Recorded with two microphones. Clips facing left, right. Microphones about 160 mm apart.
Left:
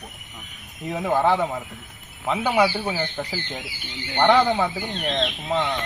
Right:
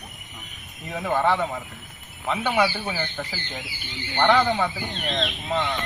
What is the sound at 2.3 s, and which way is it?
Speech, 10° left (ahead or behind).